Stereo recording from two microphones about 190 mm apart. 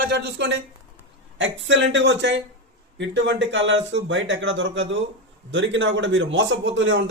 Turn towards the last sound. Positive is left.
turn(degrees=-75)  # may be behind; listen again after turning